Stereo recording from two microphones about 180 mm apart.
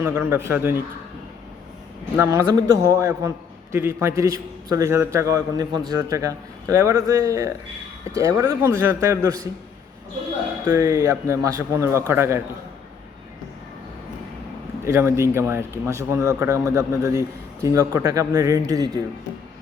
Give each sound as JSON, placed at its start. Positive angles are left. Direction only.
{"t": 0.0, "sound": "a man's voice", "side_deg": -15}
{"t": 2.1, "sound": "a man's voice", "side_deg": -15}
{"t": 10.7, "sound": "a man's voice", "side_deg": -15}
{"t": 14.8, "sound": "a man's voice", "side_deg": -15}